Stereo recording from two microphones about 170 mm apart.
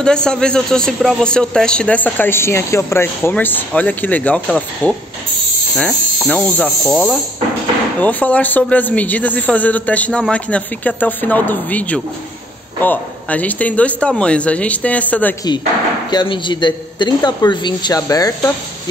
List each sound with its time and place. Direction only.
0.0 s speech: 5° left (ahead or behind)
16.1 s a man's voice: 25° left (ahead or behind)